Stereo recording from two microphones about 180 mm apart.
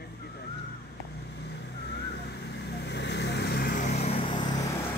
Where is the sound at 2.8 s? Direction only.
75° left (ahead or behind).